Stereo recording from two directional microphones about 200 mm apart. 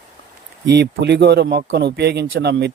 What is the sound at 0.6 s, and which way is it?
Speech, 60° right (ahead or behind).